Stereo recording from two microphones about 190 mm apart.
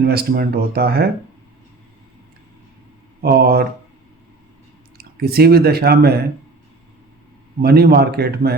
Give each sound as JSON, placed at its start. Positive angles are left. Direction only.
{"t": 0.0, "sound": "speech", "side_deg": -55}
{"t": 3.2, "sound": "speech", "side_deg": -55}
{"t": 4.9, "sound": "speech", "side_deg": -55}
{"t": 7.6, "sound": "speech", "side_deg": -55}